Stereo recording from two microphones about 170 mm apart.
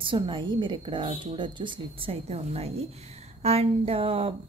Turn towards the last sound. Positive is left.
turn(degrees=-35)  # may be behind; listen again after turning